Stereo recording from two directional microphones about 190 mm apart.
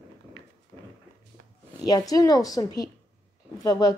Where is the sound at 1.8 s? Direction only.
20° left (ahead or behind).